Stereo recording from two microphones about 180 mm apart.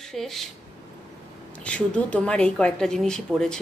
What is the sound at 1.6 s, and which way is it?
Speech, 5° left (ahead or behind).